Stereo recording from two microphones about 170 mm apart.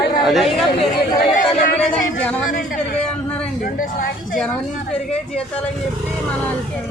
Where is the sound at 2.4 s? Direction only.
55° left (ahead or behind).